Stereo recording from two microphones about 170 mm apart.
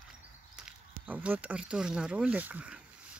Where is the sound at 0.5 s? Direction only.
5° right (ahead or behind).